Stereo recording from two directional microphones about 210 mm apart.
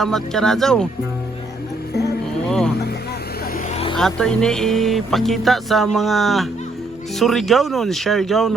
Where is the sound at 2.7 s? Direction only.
50° left (ahead or behind); by 3.9 s 30° left (ahead or behind).